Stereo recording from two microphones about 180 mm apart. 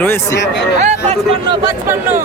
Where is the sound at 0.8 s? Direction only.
35° right (ahead or behind).